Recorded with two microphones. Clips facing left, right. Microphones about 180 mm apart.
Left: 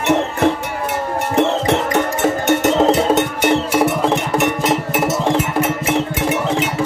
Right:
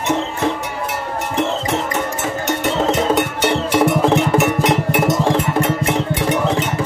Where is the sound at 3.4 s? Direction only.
5° left (ahead or behind).